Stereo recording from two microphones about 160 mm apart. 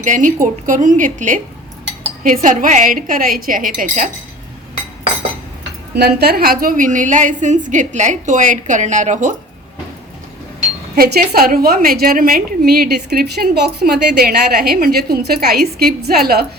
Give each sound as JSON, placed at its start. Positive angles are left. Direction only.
{"t": 0.0, "sound": "a woman's voice", "side_deg": -55}
{"t": 6.0, "sound": "a woman's voice", "side_deg": -85}
{"t": 10.9, "sound": "a woman's voice", "side_deg": -75}